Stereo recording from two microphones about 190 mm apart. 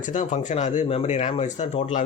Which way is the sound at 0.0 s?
40° left (ahead or behind).